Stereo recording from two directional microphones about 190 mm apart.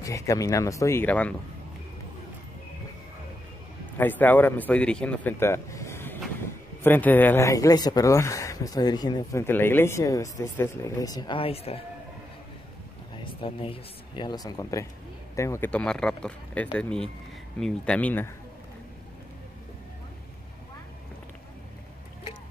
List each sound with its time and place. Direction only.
0.0 s speech: 15° left (ahead or behind)
4.0 s speech: 10° left (ahead or behind); by 11.8 s 30° left (ahead or behind)
13.1 s speech: 25° left (ahead or behind); by 18.3 s 10° left (ahead or behind)